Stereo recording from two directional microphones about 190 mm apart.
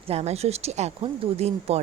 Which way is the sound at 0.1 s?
35° right (ahead or behind).